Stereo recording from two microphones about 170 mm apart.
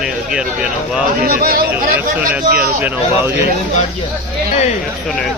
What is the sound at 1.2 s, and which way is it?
Speech, 60° right (ahead or behind).